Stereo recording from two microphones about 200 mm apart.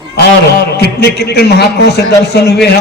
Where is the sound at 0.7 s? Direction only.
55° left (ahead or behind).